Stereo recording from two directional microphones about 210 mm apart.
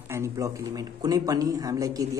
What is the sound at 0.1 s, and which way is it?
A man's voice, 15° right (ahead or behind).